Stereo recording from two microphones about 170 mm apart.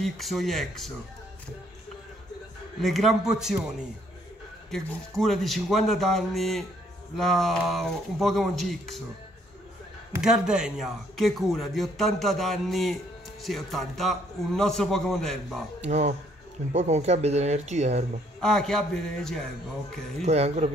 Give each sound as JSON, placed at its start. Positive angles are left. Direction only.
{"t": 0.0, "sound": "speech", "side_deg": 0}
{"t": 2.8, "sound": "speech", "side_deg": 0}
{"t": 4.6, "sound": "speech", "side_deg": 0}
{"t": 10.2, "sound": "speech", "side_deg": -5}
{"t": 15.9, "sound": "speech", "side_deg": -40}
{"t": 18.4, "sound": "speech", "side_deg": 5}
{"t": 20.2, "sound": "speech", "side_deg": -40}